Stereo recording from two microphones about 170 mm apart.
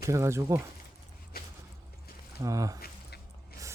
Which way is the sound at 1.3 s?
60° left (ahead or behind).